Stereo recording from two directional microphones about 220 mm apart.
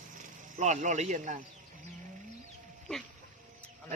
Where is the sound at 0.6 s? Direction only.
35° right (ahead or behind).